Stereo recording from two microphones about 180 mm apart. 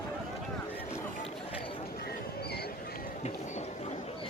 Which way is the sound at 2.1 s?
60° left (ahead or behind).